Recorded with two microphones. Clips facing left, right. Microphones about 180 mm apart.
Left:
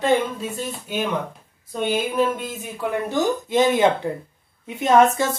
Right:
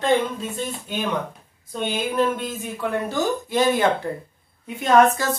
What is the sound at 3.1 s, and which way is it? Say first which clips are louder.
Speech: left 2 dB; 20° left (ahead or behind).